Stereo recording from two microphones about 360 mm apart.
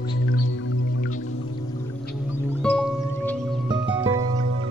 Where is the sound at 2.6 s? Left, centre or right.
Centre.